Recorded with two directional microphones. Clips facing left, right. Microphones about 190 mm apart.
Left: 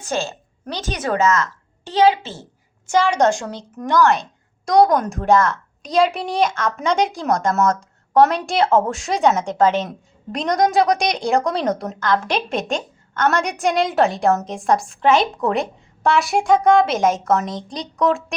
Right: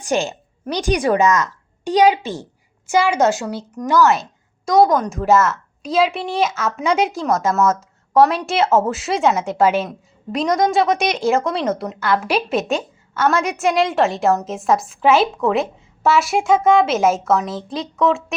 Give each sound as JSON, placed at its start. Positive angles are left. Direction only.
{"t": 0.0, "sound": "a woman's voice", "side_deg": -15}